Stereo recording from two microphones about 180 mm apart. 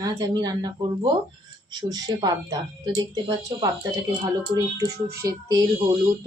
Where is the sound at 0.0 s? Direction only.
20° right (ahead or behind).